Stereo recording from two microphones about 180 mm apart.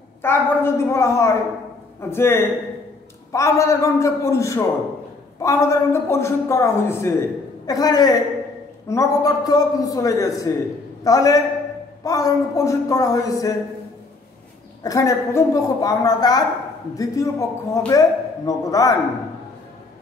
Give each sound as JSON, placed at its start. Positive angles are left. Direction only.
{"t": 0.2, "sound": "a woman's voice", "side_deg": 15}
{"t": 14.8, "sound": "a man's voice", "side_deg": 20}